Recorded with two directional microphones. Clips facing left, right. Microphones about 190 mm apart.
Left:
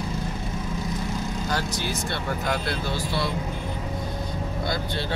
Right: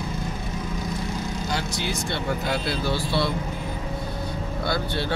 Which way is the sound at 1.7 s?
15° right (ahead or behind).